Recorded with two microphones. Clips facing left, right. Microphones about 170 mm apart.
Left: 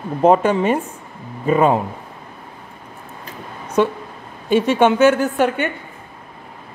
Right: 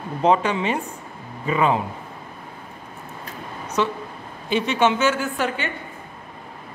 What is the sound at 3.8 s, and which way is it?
Speech, 50° left (ahead or behind).